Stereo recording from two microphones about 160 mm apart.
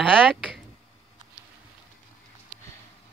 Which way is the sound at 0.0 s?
5° left (ahead or behind).